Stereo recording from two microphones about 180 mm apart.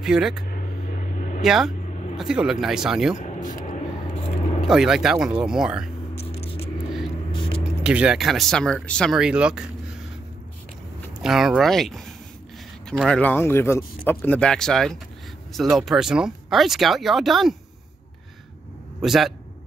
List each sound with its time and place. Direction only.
0.0 s speech: 5° right (ahead or behind)
0.5 s a sound: 45° left (ahead or behind)
1.4 s speech: centre (ahead or behind)
3.2 s vehicle: 45° left (ahead or behind)
4.6 s speech: centre (ahead or behind)
6.2 s vehicle: 35° left (ahead or behind)
7.3 s a sound: 30° left (ahead or behind)
7.8 s speech: 5° right (ahead or behind)
11.2 s speech: centre (ahead or behind)
13.2 s speech: 10° left (ahead or behind)
18.9 s speech: centre (ahead or behind)